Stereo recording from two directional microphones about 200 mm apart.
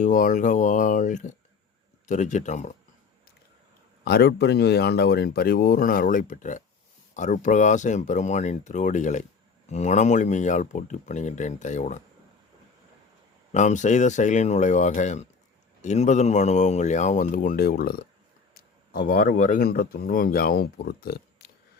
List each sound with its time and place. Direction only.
0.0 s speech: 40° left (ahead or behind)
4.0 s speech: 55° left (ahead or behind); by 12.0 s 35° left (ahead or behind)
13.5 s speech: 35° left (ahead or behind); by 21.5 s 50° left (ahead or behind)